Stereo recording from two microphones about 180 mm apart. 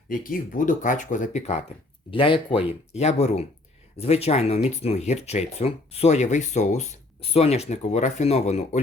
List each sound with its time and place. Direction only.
0.1 s speech: 50° left (ahead or behind)
2.0 s speech: 30° left (ahead or behind)